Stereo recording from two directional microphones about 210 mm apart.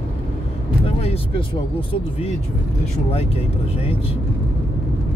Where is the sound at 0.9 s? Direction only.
30° left (ahead or behind).